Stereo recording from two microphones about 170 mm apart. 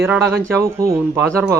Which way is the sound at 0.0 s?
10° right (ahead or behind).